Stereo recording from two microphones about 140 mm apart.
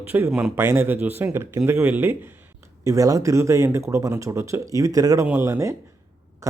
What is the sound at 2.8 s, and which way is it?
A man's voice, 25° right (ahead or behind).